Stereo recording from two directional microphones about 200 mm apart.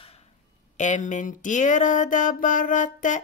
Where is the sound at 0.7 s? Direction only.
40° left (ahead or behind).